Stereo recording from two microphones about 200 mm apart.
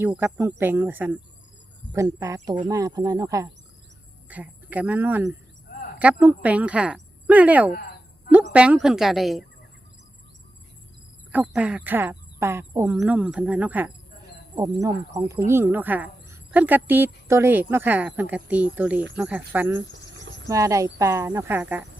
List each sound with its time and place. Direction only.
0.3 s speech: 10° right (ahead or behind)
11.3 s speech: 5° right (ahead or behind)
19.8 s cricket: 65° right (ahead or behind)
20.5 s speech: 15° right (ahead or behind)